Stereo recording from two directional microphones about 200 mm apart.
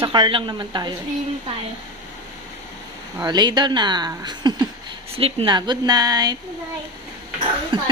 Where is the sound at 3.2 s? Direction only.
20° right (ahead or behind).